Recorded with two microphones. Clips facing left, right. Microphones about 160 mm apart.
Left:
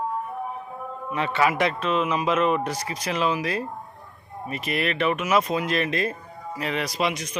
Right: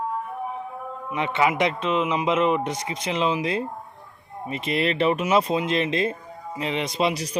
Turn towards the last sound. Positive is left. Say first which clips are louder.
# right 2 dB
turn(degrees=-30)  # may be behind; listen again after turning